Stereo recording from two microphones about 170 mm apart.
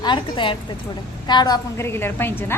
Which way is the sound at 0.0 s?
30° left (ahead or behind).